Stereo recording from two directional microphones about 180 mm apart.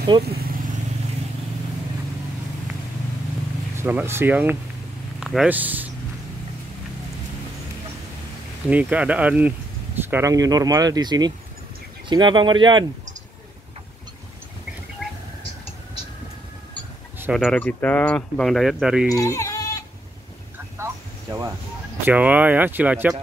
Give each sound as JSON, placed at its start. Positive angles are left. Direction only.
{"t": 0.1, "sound": "speech", "side_deg": -25}
{"t": 3.7, "sound": "speech", "side_deg": -15}
{"t": 8.6, "sound": "speech", "side_deg": -5}
{"t": 17.3, "sound": "speech", "side_deg": 0}
{"t": 19.1, "sound": "bleat", "side_deg": 15}
{"t": 20.7, "sound": "a sound", "side_deg": -15}
{"t": 22.0, "sound": "speech", "side_deg": -10}